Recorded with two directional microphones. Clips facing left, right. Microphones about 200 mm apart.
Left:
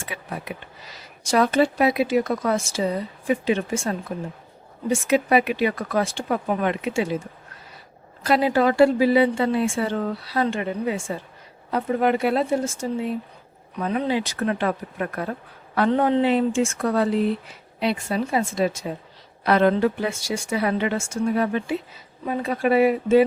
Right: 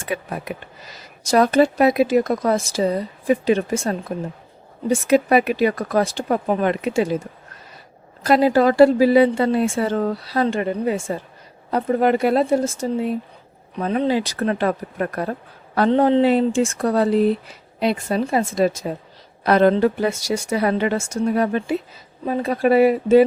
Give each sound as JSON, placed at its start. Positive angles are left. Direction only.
{"t": 0.0, "sound": "speech", "side_deg": -45}
{"t": 8.2, "sound": "speech", "side_deg": -40}
{"t": 15.9, "sound": "speech", "side_deg": -25}
{"t": 16.2, "sound": "speech", "side_deg": -35}